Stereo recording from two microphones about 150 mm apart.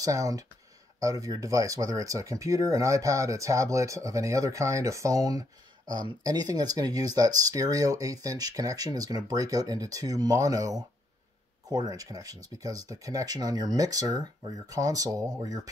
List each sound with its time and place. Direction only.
0.0 s speech: 20° right (ahead or behind)